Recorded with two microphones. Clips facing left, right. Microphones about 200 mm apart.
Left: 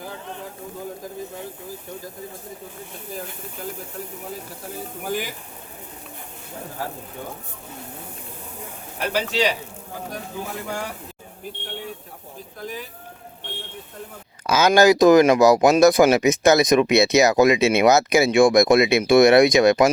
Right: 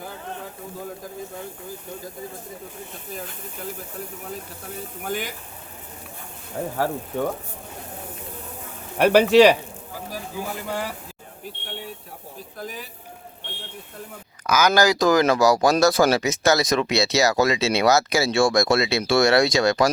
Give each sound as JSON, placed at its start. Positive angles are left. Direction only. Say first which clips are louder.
{"t": 5.0, "sound": "speech", "louder": "left 1 dB", "side_deg": 0}
{"t": 9.0, "sound": "speech", "louder": "right 10 dB", "side_deg": -65}
{"t": 10.1, "sound": "speech", "louder": "right 1 dB", "side_deg": -5}
{"t": 12.5, "sound": "speech", "louder": "left 2 dB", "side_deg": 0}
{"t": 14.4, "sound": "speech", "louder": "left 4 dB", "side_deg": 25}